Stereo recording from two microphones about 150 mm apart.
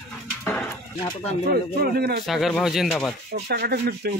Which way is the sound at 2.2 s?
Centre (ahead or behind).